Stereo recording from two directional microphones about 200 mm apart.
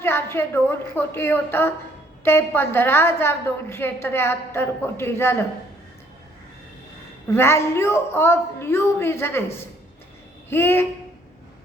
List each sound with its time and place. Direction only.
0.0 s a woman's voice: 10° left (ahead or behind)
7.3 s a woman's voice: 15° left (ahead or behind)